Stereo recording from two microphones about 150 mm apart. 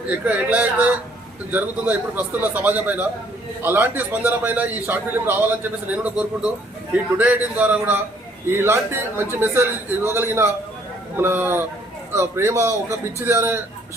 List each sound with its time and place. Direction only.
0.3 s a man's voice: 10° right (ahead or behind)